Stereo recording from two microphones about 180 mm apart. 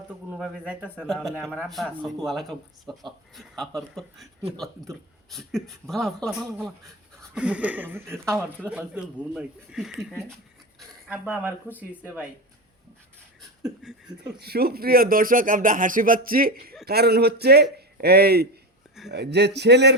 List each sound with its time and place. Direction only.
0.3 s speech: 5° right (ahead or behind)
13.8 s speech: centre (ahead or behind)
14.3 s a man's voice: 65° right (ahead or behind)